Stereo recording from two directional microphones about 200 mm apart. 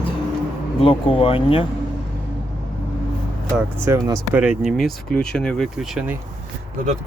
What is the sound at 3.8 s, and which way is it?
Speech, 10° right (ahead or behind).